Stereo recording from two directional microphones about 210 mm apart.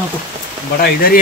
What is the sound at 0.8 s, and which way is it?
Speech, 45° left (ahead or behind).